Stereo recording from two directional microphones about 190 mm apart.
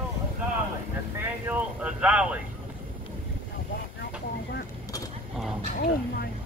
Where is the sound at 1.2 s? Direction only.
10° right (ahead or behind).